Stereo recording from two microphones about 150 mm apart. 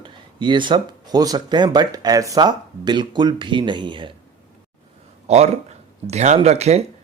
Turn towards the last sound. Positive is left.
turn(degrees=-45)  # may be behind; listen again after turning